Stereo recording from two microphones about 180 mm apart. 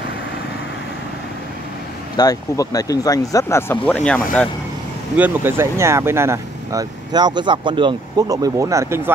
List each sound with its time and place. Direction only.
2.1 s speech: 20° left (ahead or behind)
5.1 s speech: 10° right (ahead or behind)